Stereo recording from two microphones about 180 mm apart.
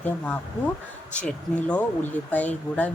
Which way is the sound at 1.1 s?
5° left (ahead or behind).